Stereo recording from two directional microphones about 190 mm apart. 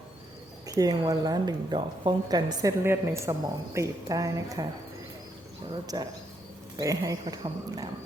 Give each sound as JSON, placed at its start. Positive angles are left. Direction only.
{"t": 0.7, "sound": "a woman's voice", "side_deg": -20}
{"t": 5.9, "sound": "speech", "side_deg": -25}